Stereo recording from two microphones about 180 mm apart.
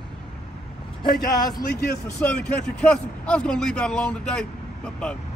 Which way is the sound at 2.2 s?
10° left (ahead or behind).